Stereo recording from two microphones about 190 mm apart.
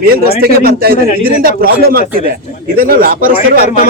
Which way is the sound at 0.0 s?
55° right (ahead or behind).